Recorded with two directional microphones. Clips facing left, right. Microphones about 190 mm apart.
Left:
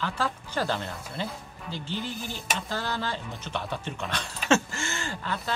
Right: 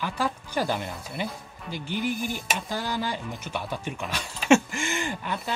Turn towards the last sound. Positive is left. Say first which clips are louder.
# right 3 dB
turn(degrees=-15)  # may be behind; listen again after turning